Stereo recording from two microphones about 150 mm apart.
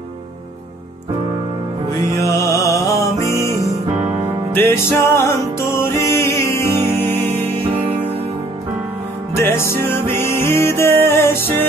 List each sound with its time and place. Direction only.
2.1 s music: 20° left (ahead or behind)
4.6 s music: 15° left (ahead or behind)
9.3 s music: 15° left (ahead or behind)